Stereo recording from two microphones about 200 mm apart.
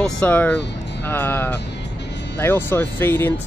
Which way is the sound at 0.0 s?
5° left (ahead or behind).